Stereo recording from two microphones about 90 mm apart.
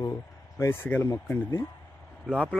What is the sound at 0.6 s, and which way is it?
Speech, 30° left (ahead or behind).